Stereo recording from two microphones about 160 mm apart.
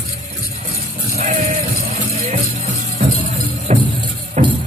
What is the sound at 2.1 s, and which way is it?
Music, 40° right (ahead or behind).